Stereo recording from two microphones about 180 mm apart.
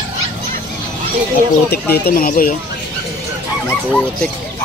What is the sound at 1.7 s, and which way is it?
Speech, 55° left (ahead or behind).